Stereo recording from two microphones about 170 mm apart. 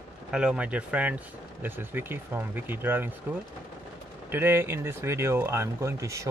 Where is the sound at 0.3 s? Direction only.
5° right (ahead or behind).